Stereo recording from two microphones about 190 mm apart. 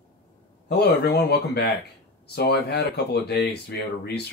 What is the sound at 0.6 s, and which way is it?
Speech, 60° left (ahead or behind).